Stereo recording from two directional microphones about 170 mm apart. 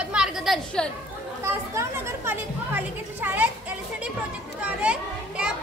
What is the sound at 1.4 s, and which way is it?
A woman's voice, 15° right (ahead or behind).